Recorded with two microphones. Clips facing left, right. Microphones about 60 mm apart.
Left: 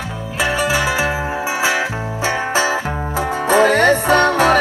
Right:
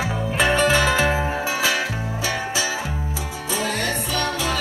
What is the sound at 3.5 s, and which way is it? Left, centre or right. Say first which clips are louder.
Music: left 12 dB; left.